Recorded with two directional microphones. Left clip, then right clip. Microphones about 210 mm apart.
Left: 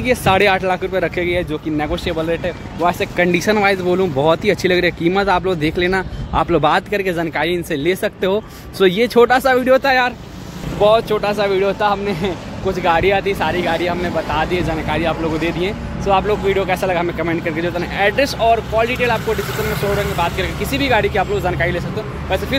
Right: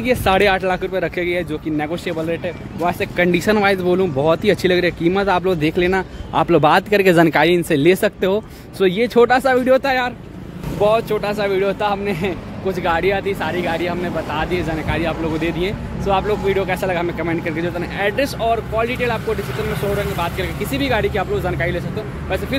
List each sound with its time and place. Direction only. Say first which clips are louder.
0.0 s speech: left 1 dB; 5° right (ahead or behind)
7.0 s speech: right 6 dB; 35° right (ahead or behind)
8.7 s speech: left 2 dB; centre (ahead or behind)